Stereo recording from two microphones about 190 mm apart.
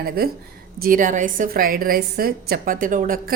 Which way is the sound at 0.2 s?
55° right (ahead or behind).